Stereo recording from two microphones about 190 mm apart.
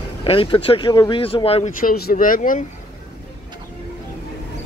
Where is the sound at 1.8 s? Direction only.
50° left (ahead or behind).